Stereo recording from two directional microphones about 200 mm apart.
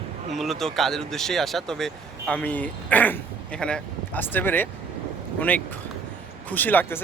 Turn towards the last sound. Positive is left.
turn(degrees=10)  # may be behind; listen again after turning